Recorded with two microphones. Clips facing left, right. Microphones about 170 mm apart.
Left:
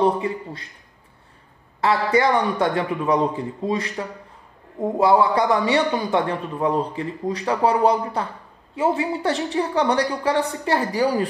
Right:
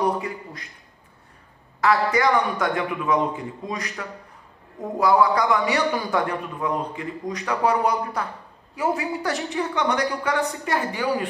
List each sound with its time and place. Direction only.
0.0 s a man's voice: 25° left (ahead or behind)
1.8 s a man's voice: 30° left (ahead or behind)